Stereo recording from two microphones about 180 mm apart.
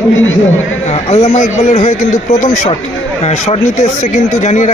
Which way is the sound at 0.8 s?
35° left (ahead or behind).